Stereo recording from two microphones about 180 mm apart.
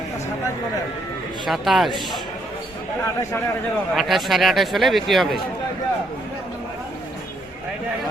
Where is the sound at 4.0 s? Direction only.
Centre (ahead or behind).